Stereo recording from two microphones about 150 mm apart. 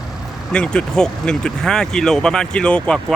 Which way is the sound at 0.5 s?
5° left (ahead or behind).